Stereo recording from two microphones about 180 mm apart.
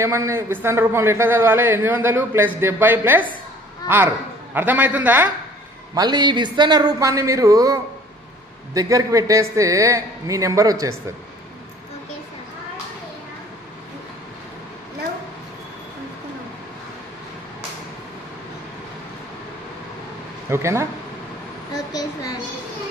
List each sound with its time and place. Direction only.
0.0 s a man's voice: 15° right (ahead or behind)
5.9 s a man's voice: 25° right (ahead or behind)
20.4 s speech: 15° right (ahead or behind)
21.7 s a woman's voice: 20° left (ahead or behind)